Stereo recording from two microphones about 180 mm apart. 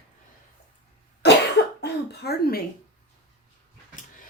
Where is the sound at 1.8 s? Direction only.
60° left (ahead or behind).